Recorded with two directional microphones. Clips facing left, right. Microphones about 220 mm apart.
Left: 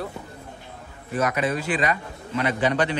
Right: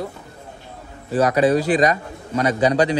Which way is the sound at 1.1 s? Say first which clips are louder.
Right 8 dB; 35° right (ahead or behind).